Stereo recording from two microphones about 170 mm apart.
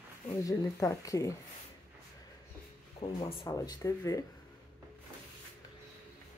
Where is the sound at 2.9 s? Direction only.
30° left (ahead or behind).